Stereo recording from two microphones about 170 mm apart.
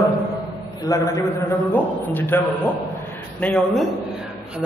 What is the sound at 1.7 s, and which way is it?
Speech, 10° left (ahead or behind).